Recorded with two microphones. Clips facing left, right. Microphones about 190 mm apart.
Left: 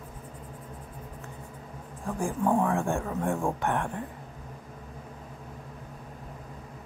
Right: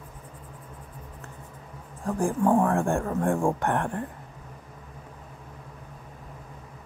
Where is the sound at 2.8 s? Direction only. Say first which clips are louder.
Right 4 dB; 50° right (ahead or behind).